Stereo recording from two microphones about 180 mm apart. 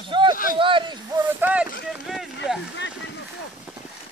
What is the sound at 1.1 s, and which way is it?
Speech, 10° right (ahead or behind).